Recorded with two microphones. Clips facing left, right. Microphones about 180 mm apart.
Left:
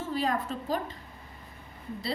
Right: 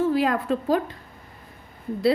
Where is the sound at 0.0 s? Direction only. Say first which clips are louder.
Right 8 dB; 70° right (ahead or behind).